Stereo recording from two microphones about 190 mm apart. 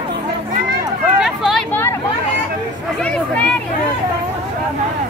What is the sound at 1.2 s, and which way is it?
Hubbub, centre (ahead or behind).